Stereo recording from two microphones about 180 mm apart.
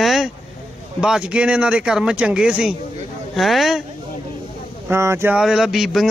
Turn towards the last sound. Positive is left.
turn(degrees=0)  # may be behind; listen again after turning